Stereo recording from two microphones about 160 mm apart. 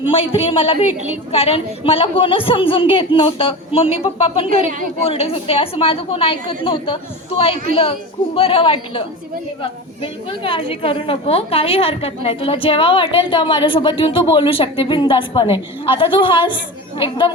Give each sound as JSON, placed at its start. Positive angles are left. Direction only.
{"t": 0.1, "sound": "a woman's voice", "side_deg": 35}